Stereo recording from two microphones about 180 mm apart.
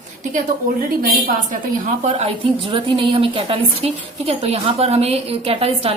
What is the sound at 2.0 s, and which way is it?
A woman's voice, 30° right (ahead or behind).